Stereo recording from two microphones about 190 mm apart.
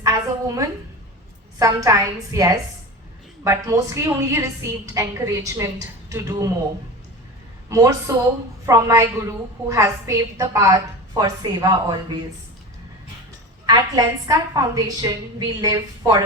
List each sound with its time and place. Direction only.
0.0 s a sound: 15° right (ahead or behind)
1.5 s a woman's voice: 15° right (ahead or behind)
7.7 s a woman's voice: 15° right (ahead or behind)
13.7 s a woman's voice: 20° right (ahead or behind)